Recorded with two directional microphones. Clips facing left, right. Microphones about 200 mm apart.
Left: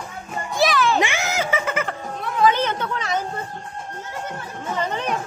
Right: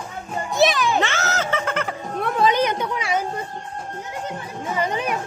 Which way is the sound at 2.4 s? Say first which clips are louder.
Left 1 dB; 15° right (ahead or behind).